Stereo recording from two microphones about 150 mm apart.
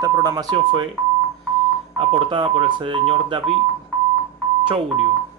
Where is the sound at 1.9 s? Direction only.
35° right (ahead or behind).